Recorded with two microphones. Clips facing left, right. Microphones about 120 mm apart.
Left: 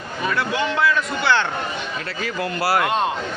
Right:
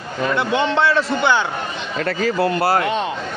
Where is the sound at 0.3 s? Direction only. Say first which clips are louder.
Right 4 dB; 25° right (ahead or behind).